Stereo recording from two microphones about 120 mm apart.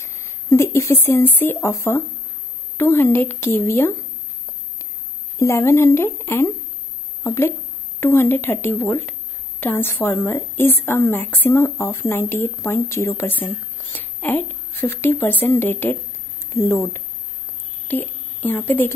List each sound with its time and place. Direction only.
0.0 s a woman's voice: 20° left (ahead or behind)
5.4 s a woman's voice: 25° left (ahead or behind)
17.8 s a woman's voice: 15° left (ahead or behind)